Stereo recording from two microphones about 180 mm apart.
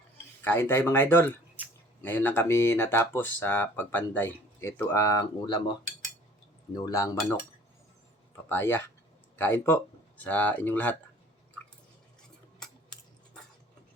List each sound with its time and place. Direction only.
0.4 s speech: 10° left (ahead or behind)
6.7 s speech: 20° left (ahead or behind)
8.4 s speech: 10° left (ahead or behind)
12.5 s a sound: 5° left (ahead or behind)